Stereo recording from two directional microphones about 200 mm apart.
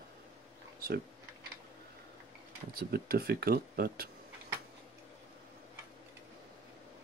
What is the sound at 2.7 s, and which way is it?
Speech, 50° right (ahead or behind).